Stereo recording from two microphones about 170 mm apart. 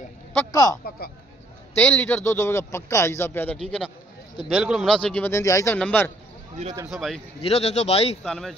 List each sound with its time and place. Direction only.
0.5 s speech: 20° left (ahead or behind)
0.8 s speech: 65° left (ahead or behind)
1.8 s speech: 10° left (ahead or behind)
4.5 s speech: centre (ahead or behind)
7.4 s a man's voice: 40° left (ahead or behind)
8.2 s speech: centre (ahead or behind)